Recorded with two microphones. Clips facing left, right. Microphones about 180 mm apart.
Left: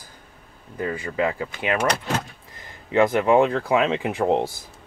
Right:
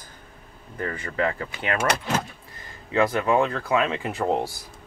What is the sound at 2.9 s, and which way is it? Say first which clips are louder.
Speech: left 4 dB; 20° left (ahead or behind).